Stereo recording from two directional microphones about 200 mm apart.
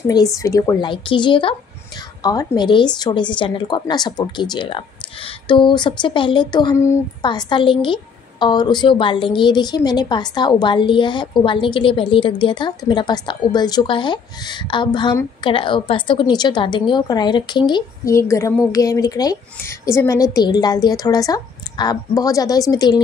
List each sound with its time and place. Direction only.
0.4 s a woman's voice: 15° left (ahead or behind)